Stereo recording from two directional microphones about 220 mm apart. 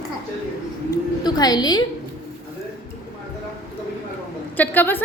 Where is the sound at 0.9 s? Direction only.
15° left (ahead or behind).